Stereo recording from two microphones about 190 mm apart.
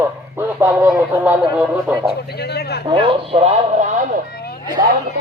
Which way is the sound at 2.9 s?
30° right (ahead or behind).